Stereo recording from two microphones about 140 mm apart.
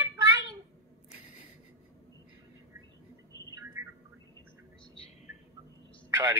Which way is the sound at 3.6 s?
20° right (ahead or behind).